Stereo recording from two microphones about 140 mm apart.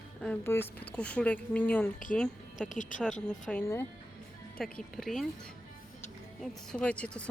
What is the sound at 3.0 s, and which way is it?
Speech, 5° left (ahead or behind).